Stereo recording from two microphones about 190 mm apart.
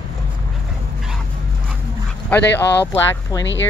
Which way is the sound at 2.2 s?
10° left (ahead or behind).